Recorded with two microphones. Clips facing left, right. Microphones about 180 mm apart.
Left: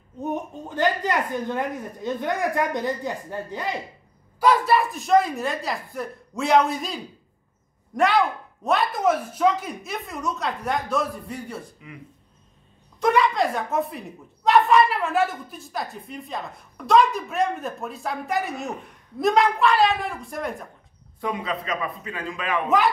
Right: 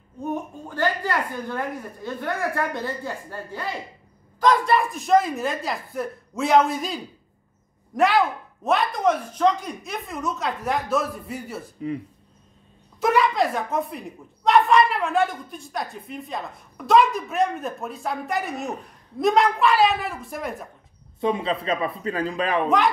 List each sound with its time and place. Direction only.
0.2 s a woman's voice: 20° left (ahead or behind)
4.4 s speech: 5° left (ahead or behind)
13.0 s speech: centre (ahead or behind)
21.2 s a man's voice: 25° right (ahead or behind)